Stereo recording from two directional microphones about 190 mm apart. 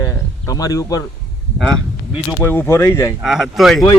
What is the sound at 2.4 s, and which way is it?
Speech, 10° left (ahead or behind).